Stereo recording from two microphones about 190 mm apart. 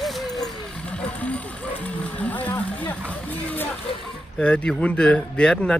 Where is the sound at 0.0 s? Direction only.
Centre (ahead or behind).